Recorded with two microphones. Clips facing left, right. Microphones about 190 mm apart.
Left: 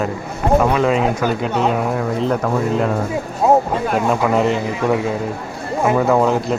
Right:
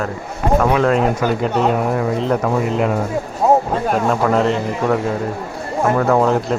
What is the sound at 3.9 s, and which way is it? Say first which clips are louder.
A man's voice: even; 5° left (ahead or behind).